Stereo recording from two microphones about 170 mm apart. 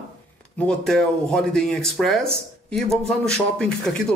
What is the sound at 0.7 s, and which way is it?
Speech, 5° left (ahead or behind).